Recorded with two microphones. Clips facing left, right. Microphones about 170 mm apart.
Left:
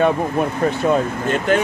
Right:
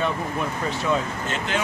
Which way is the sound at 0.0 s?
50° left (ahead or behind).